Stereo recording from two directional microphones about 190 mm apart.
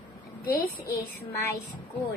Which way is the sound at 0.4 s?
50° left (ahead or behind).